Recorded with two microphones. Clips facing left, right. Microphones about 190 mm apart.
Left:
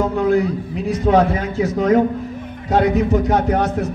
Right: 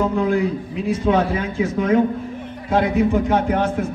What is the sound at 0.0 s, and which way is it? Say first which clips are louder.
A man's voice: left 2 dB; 40° left (ahead or behind).